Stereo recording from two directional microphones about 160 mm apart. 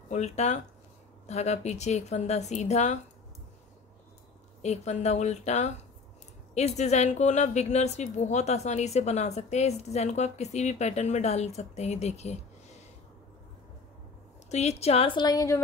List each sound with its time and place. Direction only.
0.1 s speech: 45° left (ahead or behind)
4.6 s speech: 45° left (ahead or behind)
14.5 s a woman's voice: 45° left (ahead or behind); by 15.6 s 20° left (ahead or behind)